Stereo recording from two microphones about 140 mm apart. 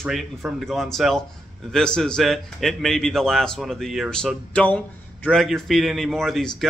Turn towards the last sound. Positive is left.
turn(degrees=0)  # may be behind; listen again after turning